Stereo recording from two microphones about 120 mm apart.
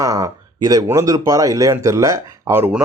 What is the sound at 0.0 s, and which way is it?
Speech, 30° right (ahead or behind).